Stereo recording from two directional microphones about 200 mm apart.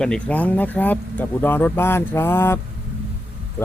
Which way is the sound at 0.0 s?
5° left (ahead or behind).